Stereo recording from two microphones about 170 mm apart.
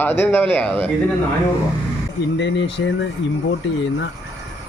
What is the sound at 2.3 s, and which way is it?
Speech, 90° left.